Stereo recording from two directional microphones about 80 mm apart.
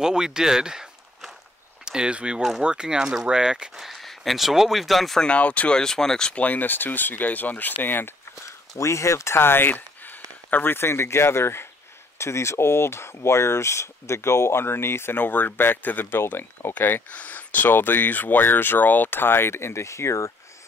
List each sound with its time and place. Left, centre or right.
0.0 s speech: centre
5.3 s speech: centre
6.4 s speech: left